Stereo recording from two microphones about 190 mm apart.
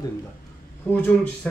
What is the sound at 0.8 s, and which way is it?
Speech, 10° left (ahead or behind).